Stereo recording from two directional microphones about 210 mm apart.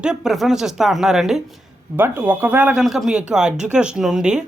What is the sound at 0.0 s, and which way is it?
Speech, 5° right (ahead or behind).